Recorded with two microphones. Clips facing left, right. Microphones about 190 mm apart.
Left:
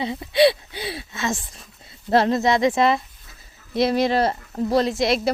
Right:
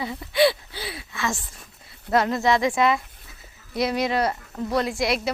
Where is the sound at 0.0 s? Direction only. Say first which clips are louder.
Left 3 dB; 20° left (ahead or behind).